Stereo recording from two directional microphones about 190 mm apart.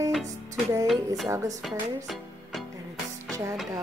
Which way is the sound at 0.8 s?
Centre (ahead or behind).